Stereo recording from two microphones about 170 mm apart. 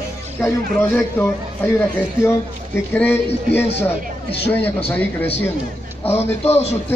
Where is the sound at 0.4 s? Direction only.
10° left (ahead or behind).